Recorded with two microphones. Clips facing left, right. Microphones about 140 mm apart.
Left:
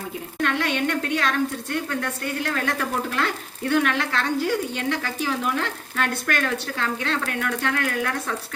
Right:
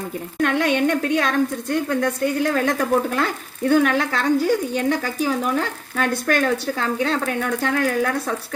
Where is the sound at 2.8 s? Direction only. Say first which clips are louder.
Right 6 dB; 40° right (ahead or behind).